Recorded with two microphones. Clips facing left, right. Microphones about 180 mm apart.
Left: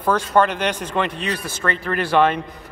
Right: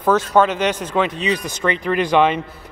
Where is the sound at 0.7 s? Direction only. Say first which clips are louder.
Right 2 dB; 10° left (ahead or behind).